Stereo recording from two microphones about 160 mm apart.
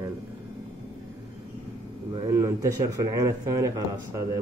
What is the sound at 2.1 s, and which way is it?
Speech, 20° right (ahead or behind).